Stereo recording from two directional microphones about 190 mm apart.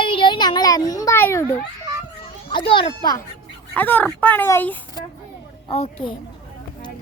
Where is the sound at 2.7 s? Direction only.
25° left (ahead or behind).